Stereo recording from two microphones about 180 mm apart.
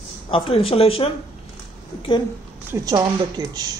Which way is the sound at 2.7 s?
20° right (ahead or behind).